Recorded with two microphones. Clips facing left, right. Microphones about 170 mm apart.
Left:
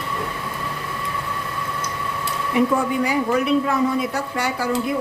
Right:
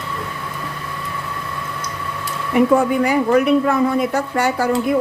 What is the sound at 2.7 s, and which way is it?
Speech, 55° right (ahead or behind).